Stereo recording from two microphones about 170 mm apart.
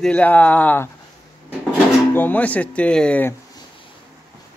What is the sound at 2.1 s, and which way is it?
Speech, 10° left (ahead or behind).